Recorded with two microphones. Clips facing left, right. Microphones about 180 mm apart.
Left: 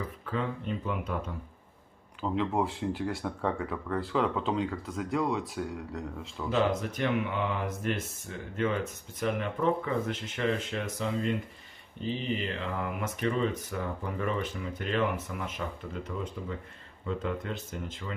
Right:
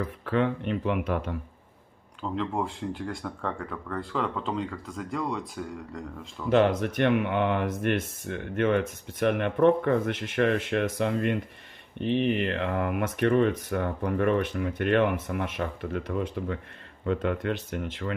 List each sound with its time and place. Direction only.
0.2 s speech: 70° right (ahead or behind)
2.2 s speech: 5° left (ahead or behind)
6.5 s speech: 60° right (ahead or behind)